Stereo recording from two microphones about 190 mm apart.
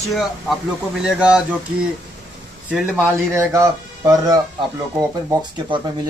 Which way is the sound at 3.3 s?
15° right (ahead or behind).